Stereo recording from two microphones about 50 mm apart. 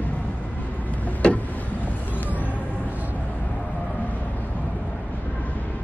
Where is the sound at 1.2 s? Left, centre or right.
Left.